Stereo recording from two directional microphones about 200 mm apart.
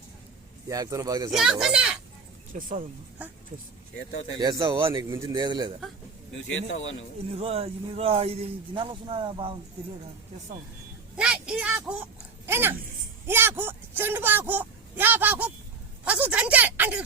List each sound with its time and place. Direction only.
0.7 s speech: 15° right (ahead or behind)
1.3 s speech: 5° right (ahead or behind)
2.5 s speech: 40° right (ahead or behind)
3.9 s speech: 65° left (ahead or behind)
4.4 s speech: 20° right (ahead or behind)
7.3 s speech: 30° right (ahead or behind)
11.2 s a sound: 5° right (ahead or behind)
12.5 s speech: 10° right (ahead or behind)
13.2 s a sound: 10° right (ahead or behind)